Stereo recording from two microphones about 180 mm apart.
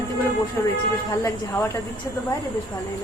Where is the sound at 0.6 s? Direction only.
15° left (ahead or behind).